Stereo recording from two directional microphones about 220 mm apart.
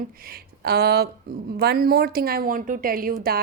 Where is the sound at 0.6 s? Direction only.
45° right (ahead or behind).